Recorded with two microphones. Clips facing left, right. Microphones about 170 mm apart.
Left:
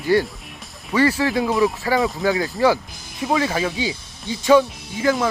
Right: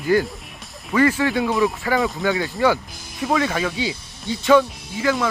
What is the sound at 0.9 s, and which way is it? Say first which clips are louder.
Speech: even; 30° left (ahead or behind).